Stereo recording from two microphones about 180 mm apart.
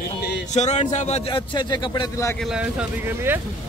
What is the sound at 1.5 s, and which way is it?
Speech, 25° left (ahead or behind).